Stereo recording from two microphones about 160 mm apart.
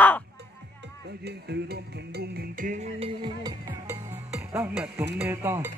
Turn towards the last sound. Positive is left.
turn(degrees=-15)  # may be behind; listen again after turning